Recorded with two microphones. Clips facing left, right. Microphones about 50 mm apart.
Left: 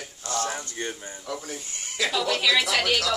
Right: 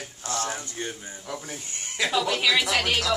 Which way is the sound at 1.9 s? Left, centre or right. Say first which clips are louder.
Even; centre.